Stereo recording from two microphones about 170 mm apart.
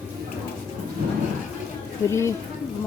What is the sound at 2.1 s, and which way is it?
Speech, 15° left (ahead or behind).